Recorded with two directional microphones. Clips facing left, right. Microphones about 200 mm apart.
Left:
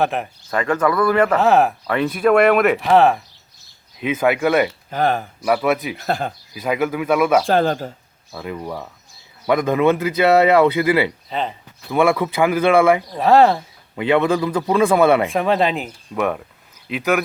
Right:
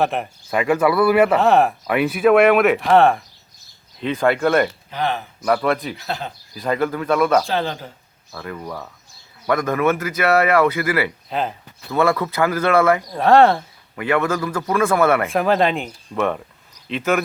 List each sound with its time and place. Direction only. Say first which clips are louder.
0.0 s speech: even; centre (ahead or behind)
0.5 s a man's voice: right 1 dB; 10° right (ahead or behind); by 4.7 s 5° left (ahead or behind)
4.9 s speech: left 4 dB; 45° left (ahead or behind)
5.5 s speech: left 1 dB; 5° left (ahead or behind)
6.0 s speech: left 5 dB; 50° left (ahead or behind)
6.5 s a man's voice: even; 10° left (ahead or behind)
7.4 s speech: left 6 dB; 50° left (ahead or behind)
8.3 s a man's voice: left 3 dB; 15° left (ahead or behind)
11.3 s speech: right 1 dB; 5° right (ahead or behind)
11.9 s a man's voice: left 2 dB; 15° left (ahead or behind)
13.1 s speech: right 1 dB; centre (ahead or behind)
13.9 s a man's voice: left 3 dB; 20° left (ahead or behind)
15.3 s speech: even; centre (ahead or behind)